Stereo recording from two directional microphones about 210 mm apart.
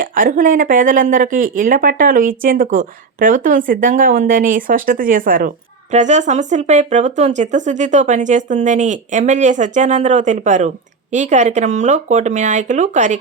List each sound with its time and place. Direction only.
0.0 s speech: 40° right (ahead or behind)